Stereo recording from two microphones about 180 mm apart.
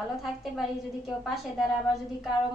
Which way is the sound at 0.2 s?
Centre (ahead or behind).